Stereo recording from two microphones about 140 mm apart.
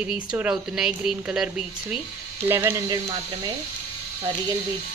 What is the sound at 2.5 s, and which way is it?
Speech, 15° right (ahead or behind).